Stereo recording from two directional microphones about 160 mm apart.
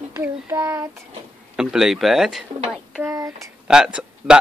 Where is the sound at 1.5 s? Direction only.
5° right (ahead or behind).